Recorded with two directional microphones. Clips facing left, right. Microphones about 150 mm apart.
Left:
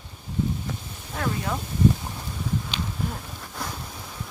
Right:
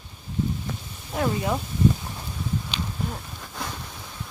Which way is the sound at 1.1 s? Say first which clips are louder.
Right 4 dB; 20° right (ahead or behind).